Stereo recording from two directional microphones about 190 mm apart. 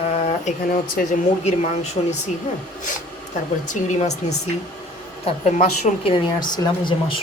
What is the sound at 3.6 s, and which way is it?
Speech, 40° left (ahead or behind).